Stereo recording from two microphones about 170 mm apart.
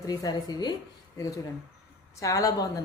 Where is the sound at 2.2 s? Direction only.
20° left (ahead or behind).